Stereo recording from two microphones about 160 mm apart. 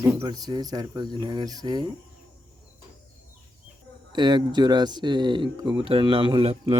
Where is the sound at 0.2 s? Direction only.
25° right (ahead or behind).